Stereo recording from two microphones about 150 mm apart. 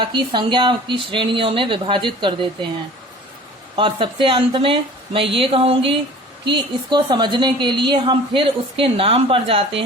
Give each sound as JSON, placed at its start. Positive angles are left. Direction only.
{"t": 0.0, "sound": "a woman's voice", "side_deg": -30}
{"t": 3.8, "sound": "a woman's voice", "side_deg": -35}